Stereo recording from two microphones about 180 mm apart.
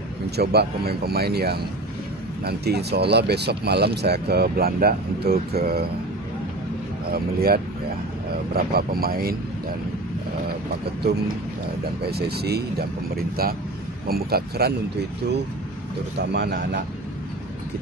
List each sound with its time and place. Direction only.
0.4 s speech: 60° right (ahead or behind)
7.1 s speech: 55° right (ahead or behind)
12.1 s speech: 60° right (ahead or behind)
16.2 s speech: 65° right (ahead or behind)